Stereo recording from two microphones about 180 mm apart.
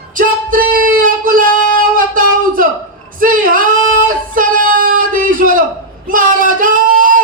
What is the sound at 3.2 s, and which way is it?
Female singing, 50° right (ahead or behind).